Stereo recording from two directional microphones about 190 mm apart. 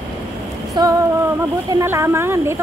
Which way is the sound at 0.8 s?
20° right (ahead or behind).